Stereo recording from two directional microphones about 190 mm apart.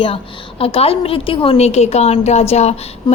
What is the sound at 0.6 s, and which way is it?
A woman's voice, 30° left (ahead or behind).